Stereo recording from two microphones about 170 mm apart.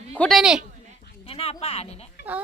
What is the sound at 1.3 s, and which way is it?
Speech, 35° left (ahead or behind).